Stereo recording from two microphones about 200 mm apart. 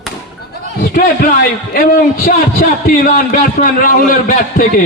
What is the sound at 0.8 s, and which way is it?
A man's voice, 45° left (ahead or behind).